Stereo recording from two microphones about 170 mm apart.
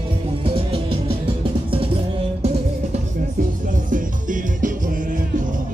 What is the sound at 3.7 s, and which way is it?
Music, 50° right (ahead or behind).